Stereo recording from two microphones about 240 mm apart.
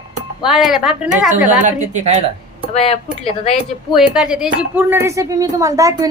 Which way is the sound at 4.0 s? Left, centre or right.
Centre.